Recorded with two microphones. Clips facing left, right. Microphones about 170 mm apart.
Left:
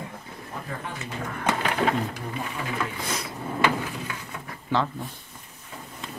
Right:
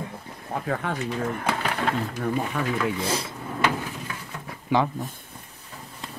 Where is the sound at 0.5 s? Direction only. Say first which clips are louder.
Right 8 dB; 65° right (ahead or behind).